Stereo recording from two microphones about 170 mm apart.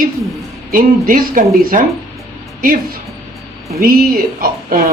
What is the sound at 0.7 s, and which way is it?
Speech, 55° right (ahead or behind).